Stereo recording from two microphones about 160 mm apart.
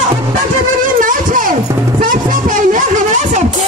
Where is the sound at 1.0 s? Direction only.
55° right (ahead or behind).